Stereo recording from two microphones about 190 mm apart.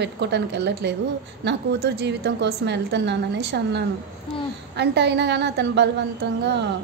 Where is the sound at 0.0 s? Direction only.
65° right (ahead or behind).